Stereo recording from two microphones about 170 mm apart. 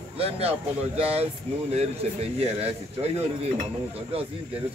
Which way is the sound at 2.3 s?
35° right (ahead or behind).